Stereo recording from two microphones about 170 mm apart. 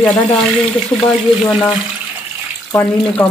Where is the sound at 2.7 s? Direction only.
10° left (ahead or behind).